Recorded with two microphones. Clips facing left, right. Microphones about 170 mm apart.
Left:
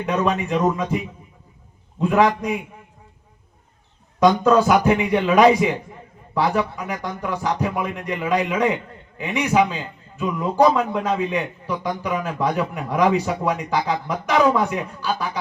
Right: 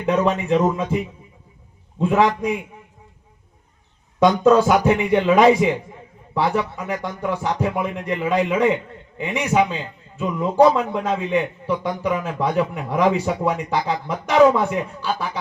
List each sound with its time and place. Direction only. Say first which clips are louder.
0.0 s a man's voice: right 2 dB; 25° right (ahead or behind)
2.0 s a man's voice: even; 25° right (ahead or behind)
4.2 s a man's voice: right 1 dB; 25° right (ahead or behind)